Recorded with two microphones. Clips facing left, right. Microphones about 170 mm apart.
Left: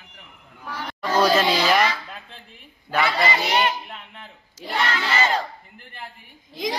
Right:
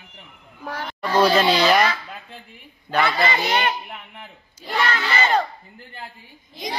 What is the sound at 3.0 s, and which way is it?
Speech, 55° right (ahead or behind).